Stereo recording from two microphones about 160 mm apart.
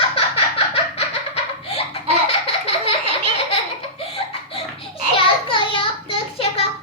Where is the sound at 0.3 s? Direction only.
35° left (ahead or behind).